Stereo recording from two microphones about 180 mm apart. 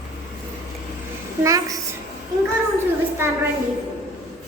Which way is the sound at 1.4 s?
20° right (ahead or behind).